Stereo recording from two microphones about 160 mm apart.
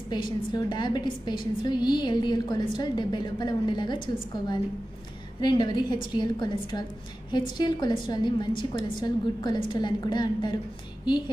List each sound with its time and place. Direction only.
0.5 s a woman's voice: 25° left (ahead or behind)